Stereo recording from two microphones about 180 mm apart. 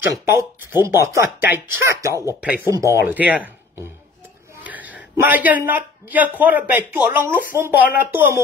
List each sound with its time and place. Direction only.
0.1 s speech: 15° right (ahead or behind)
4.6 s speech: 10° right (ahead or behind)